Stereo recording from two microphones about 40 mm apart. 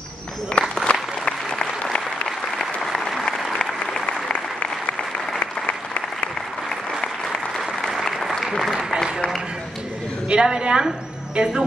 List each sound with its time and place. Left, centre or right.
0.5 s applause: left
1.2 s applause: centre
2.6 s applause: centre
4.0 s applause: left
10.3 s a woman's voice: right